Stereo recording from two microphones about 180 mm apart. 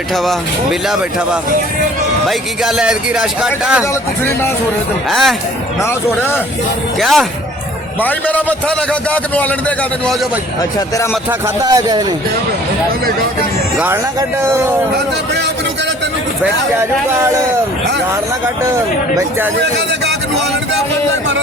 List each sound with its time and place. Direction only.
0.1 s speech: centre (ahead or behind)
4.2 s a man's voice: 15° left (ahead or behind)
5.0 s speech: centre (ahead or behind)
5.8 s a man's voice: 15° left (ahead or behind)
7.0 s a man's voice: centre (ahead or behind)
10.6 s speech: 20° left (ahead or behind)
11.1 s speech: 10° right (ahead or behind)
13.7 s speech: 10° right (ahead or behind)
16.4 s speech: 15° right (ahead or behind)